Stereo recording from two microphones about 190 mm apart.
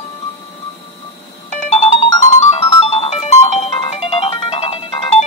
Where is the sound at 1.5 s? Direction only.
40° left (ahead or behind).